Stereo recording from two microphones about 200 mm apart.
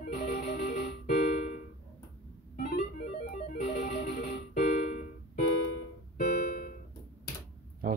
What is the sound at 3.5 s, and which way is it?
Music, 45° left (ahead or behind).